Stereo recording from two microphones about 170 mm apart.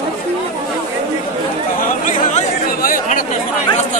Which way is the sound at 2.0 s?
50° left (ahead or behind).